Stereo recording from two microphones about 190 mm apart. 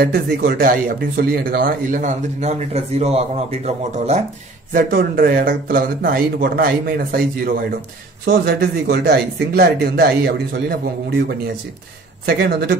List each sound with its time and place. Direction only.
0.0 s speech: 55° right (ahead or behind); by 4.2 s 35° right (ahead or behind)
4.7 s speech: 50° right (ahead or behind)
12.3 s speech: 60° right (ahead or behind)